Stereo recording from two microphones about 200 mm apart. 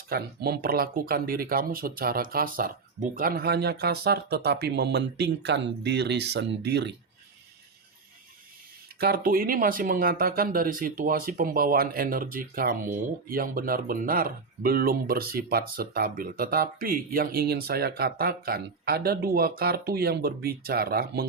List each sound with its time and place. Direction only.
0.1 s speech: 50° right (ahead or behind)
9.0 s speech: 50° right (ahead or behind)